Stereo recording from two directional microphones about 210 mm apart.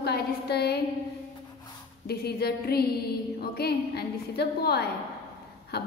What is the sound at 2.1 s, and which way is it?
A woman's voice, 50° left (ahead or behind).